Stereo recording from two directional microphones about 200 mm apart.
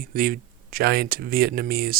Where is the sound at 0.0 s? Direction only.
45° right (ahead or behind).